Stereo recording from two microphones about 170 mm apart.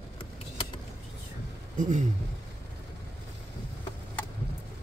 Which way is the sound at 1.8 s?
50° right (ahead or behind).